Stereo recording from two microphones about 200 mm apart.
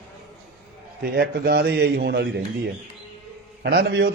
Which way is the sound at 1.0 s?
50° right (ahead or behind).